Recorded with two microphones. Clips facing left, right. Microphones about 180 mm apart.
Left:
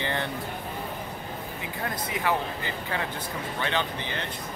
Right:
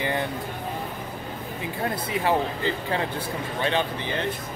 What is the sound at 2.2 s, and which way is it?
Speech, 25° right (ahead or behind).